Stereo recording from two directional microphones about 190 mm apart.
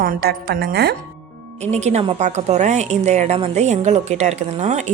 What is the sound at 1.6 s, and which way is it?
A woman's voice, 35° right (ahead or behind).